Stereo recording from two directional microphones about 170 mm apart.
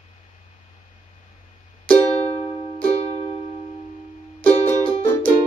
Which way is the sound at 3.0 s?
35° left (ahead or behind).